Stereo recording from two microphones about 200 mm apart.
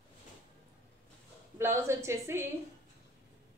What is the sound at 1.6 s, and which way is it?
Speech, 15° right (ahead or behind).